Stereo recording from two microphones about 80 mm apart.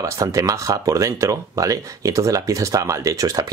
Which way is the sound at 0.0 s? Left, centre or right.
Right.